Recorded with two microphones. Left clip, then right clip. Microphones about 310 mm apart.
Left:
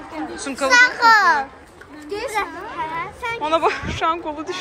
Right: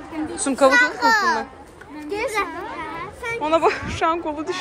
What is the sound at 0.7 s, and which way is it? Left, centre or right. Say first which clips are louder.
Speech: left 7 dB; left.